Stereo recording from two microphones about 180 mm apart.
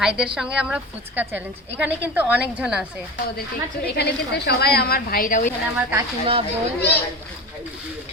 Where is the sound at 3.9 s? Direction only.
65° left (ahead or behind); by 5.5 s 50° left (ahead or behind).